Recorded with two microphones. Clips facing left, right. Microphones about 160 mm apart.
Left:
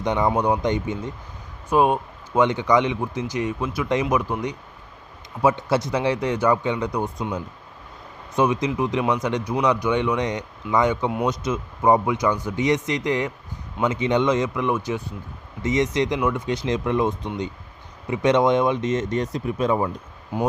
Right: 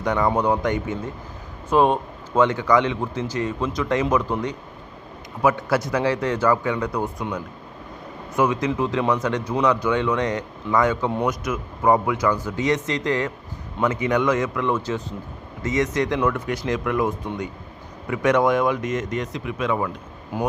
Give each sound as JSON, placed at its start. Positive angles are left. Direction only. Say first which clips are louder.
{"t": 0.0, "sound": "speech", "louder": "even", "side_deg": 20}
{"t": 5.4, "sound": "speech", "louder": "even", "side_deg": 25}